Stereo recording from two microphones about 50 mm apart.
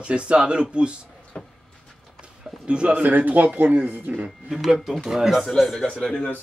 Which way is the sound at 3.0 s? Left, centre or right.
Right.